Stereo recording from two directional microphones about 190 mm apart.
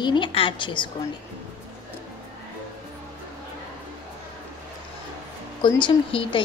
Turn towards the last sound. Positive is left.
turn(degrees=30)  # may be behind; listen again after turning